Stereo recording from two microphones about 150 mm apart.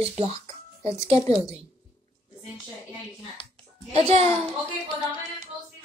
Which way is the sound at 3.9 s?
45° right (ahead or behind).